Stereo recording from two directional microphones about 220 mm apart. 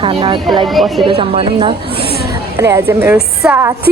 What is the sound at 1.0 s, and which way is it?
Speech, 25° right (ahead or behind).